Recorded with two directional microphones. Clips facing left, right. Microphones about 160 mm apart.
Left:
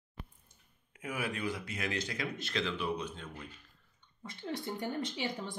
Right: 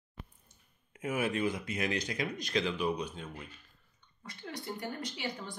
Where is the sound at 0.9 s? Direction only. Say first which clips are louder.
Right 5 dB; 25° right (ahead or behind).